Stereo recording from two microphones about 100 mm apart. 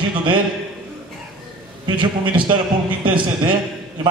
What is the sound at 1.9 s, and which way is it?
A man's voice, 55° right (ahead or behind).